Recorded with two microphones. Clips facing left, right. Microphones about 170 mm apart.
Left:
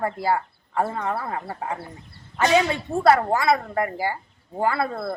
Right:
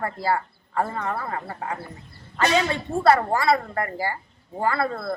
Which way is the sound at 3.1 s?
Centre (ahead or behind).